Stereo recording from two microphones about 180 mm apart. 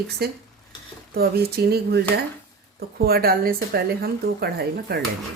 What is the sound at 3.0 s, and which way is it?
A woman's voice, 60° right (ahead or behind).